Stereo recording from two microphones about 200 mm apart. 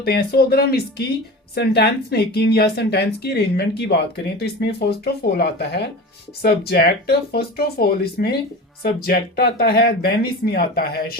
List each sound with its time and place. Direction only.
0.0 s speech: 50° left (ahead or behind)